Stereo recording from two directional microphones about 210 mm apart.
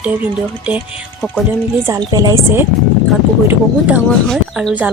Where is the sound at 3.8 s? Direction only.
5° right (ahead or behind).